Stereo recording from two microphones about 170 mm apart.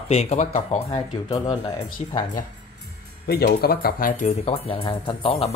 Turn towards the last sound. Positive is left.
turn(degrees=35)  # may be behind; listen again after turning